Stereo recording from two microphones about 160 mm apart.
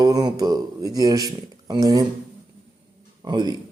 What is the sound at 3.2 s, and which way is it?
Speech, 25° right (ahead or behind).